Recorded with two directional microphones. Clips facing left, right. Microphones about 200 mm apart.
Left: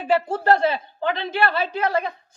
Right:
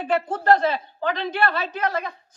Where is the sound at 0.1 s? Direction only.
10° left (ahead or behind).